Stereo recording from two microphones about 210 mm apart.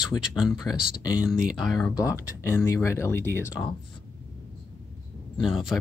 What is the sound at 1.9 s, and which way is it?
Speech, 15° left (ahead or behind).